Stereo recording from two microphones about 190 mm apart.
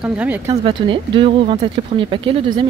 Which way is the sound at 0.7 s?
25° right (ahead or behind).